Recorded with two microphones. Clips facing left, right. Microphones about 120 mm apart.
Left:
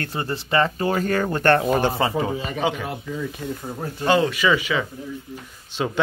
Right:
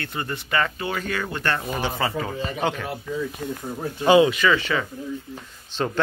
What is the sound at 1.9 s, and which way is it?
Speech, 30° left (ahead or behind).